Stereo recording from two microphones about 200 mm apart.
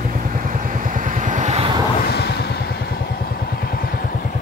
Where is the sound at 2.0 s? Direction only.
55° left (ahead or behind).